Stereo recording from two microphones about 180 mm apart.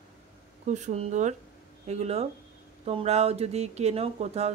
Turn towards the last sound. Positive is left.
turn(degrees=-35)  # may be behind; listen again after turning